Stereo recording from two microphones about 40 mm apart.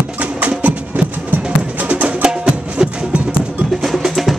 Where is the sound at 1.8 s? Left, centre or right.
Right.